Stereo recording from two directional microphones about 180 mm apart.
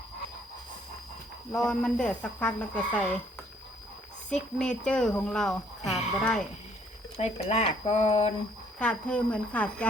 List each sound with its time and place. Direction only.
1.5 s speech: 5° left (ahead or behind)
4.3 s speech: 5° left (ahead or behind)
7.2 s speech: 35° left (ahead or behind)
8.8 s speech: 5° left (ahead or behind)